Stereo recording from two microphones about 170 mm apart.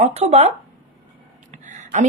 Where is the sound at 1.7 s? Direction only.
45° right (ahead or behind).